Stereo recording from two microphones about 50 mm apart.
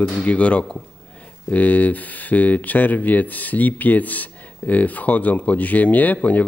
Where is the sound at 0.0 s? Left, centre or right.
Left.